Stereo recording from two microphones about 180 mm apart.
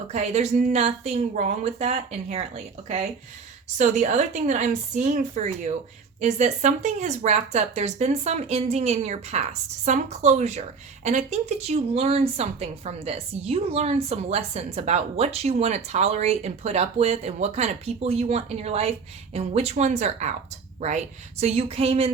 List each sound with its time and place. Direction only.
0.1 s a woman's voice: 35° right (ahead or behind)
3.8 s a woman's voice: 40° right (ahead or behind)
21.4 s a woman's voice: 35° right (ahead or behind)